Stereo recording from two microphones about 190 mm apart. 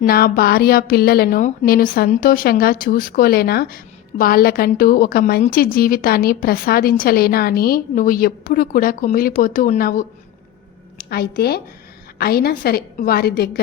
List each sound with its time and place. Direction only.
0.0 s a woman's voice: 55° left (ahead or behind)
11.1 s a woman's voice: 55° left (ahead or behind)